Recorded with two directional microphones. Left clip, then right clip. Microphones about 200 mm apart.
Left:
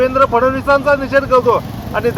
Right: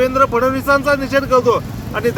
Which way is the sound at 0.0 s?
20° right (ahead or behind).